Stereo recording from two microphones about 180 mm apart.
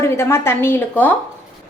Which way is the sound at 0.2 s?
15° left (ahead or behind).